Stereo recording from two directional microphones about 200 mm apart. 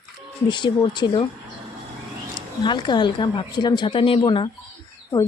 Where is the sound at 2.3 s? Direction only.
25° left (ahead or behind).